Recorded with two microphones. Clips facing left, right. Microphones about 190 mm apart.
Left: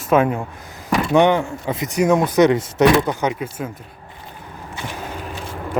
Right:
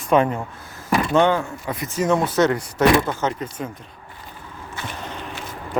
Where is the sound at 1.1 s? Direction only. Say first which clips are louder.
Left 4 dB; 20° left (ahead or behind).